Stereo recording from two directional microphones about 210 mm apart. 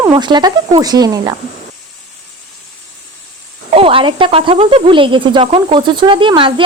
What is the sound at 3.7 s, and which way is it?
Speech, 25° right (ahead or behind).